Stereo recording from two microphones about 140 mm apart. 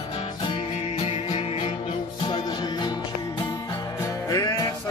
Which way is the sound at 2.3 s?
30° left (ahead or behind).